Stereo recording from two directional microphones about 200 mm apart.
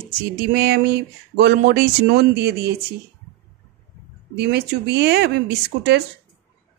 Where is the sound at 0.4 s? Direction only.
55° right (ahead or behind).